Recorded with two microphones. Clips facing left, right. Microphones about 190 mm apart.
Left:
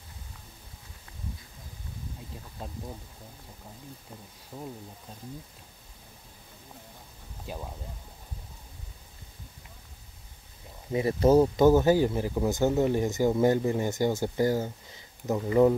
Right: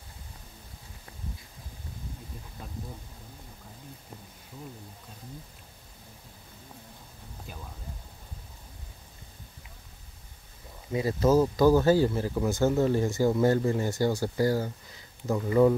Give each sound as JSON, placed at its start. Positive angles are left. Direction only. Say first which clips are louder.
{"t": 10.9, "sound": "speech", "louder": "left 2 dB", "side_deg": 25}